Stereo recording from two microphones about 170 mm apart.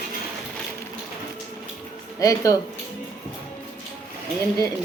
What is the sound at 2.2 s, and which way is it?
Speech, 20° left (ahead or behind).